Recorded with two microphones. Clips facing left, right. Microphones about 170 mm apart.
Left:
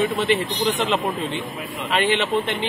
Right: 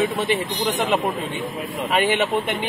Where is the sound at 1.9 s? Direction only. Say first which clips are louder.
Even; 10° right (ahead or behind).